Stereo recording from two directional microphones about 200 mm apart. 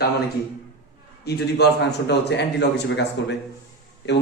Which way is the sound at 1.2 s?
55° left (ahead or behind).